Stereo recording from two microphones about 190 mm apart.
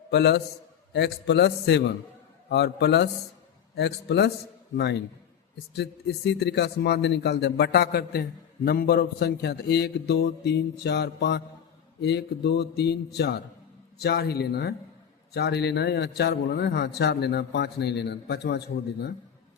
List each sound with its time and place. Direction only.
0.1 s a man's voice: 60° left (ahead or behind)
5.7 s a man's voice: 60° left (ahead or behind)